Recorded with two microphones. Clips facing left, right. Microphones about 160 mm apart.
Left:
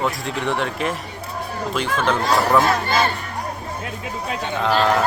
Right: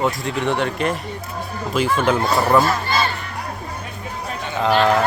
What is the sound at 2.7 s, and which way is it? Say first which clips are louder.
Speech: left 1 dB; 50° left (ahead or behind).